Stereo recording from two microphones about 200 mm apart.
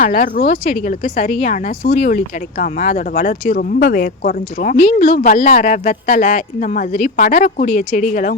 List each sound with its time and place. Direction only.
0.0 s speech: 45° left (ahead or behind)